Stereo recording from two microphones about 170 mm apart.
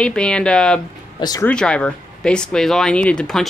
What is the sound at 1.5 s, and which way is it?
Speech, 5° left (ahead or behind).